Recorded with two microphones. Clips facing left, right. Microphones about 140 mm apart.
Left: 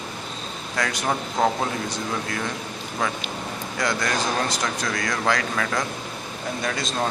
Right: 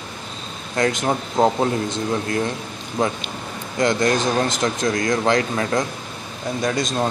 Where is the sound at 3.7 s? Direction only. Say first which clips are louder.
Right 7 dB; 25° right (ahead or behind).